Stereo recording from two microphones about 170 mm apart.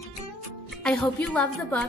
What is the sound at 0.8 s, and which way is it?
A woman's voice, 5° left (ahead or behind).